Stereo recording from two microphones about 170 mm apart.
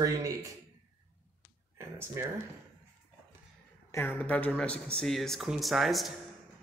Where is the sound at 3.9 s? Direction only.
10° left (ahead or behind).